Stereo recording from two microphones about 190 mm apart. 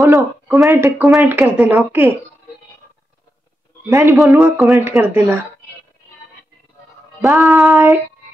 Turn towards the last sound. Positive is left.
turn(degrees=-15)  # may be behind; listen again after turning